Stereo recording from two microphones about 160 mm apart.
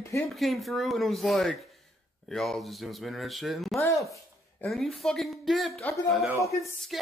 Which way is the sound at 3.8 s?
20° left (ahead or behind).